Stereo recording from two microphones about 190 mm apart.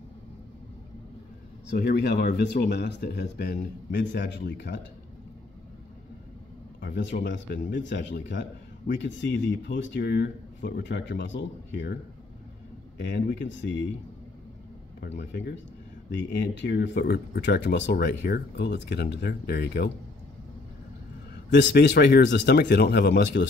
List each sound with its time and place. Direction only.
1.7 s a man's voice: 60° left (ahead or behind)
6.8 s a man's voice: 60° left (ahead or behind)
15.0 s a man's voice: 60° left (ahead or behind)
21.5 s a man's voice: 70° left (ahead or behind)